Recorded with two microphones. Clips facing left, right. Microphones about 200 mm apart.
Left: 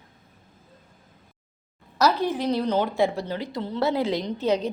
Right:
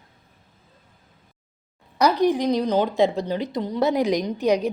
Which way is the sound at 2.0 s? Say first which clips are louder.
Right 4 dB; 15° right (ahead or behind).